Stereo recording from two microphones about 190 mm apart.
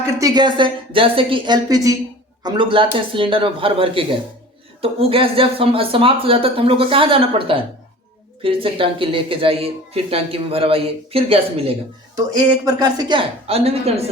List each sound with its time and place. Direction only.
0.2 s speech: 20° right (ahead or behind)